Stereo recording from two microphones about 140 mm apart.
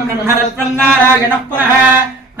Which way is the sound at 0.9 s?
15° right (ahead or behind).